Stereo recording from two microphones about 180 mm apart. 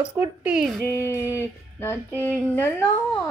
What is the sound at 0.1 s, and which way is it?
Speech, 10° right (ahead or behind).